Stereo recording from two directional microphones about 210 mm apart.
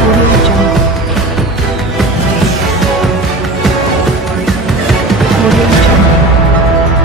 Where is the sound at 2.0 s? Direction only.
Centre (ahead or behind).